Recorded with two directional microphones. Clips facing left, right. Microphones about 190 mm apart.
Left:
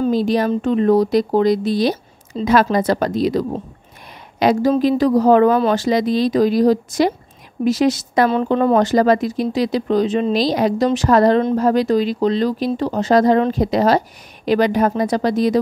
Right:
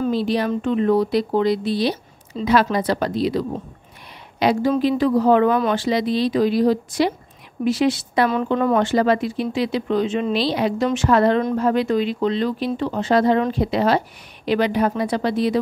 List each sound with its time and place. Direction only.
0.0 s speech: 45° left (ahead or behind)
8.3 s speech: 30° left (ahead or behind)